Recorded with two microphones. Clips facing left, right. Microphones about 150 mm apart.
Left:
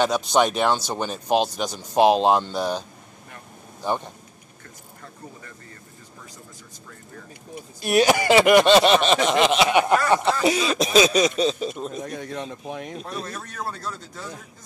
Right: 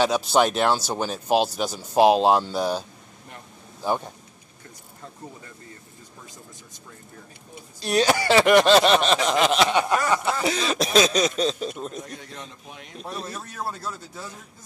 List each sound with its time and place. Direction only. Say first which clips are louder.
0.0 s speech: even; 5° right (ahead or behind)
3.8 s speech: even; 10° right (ahead or behind)
7.8 s speech: left 3 dB; 15° left (ahead or behind)
9.7 s speech: left 3 dB; 15° left (ahead or behind)
10.7 s speech: even; centre (ahead or behind)
12.1 s speech: left 8 dB; 50° left (ahead or behind)
13.0 s speech: left 1 dB; 5° right (ahead or behind)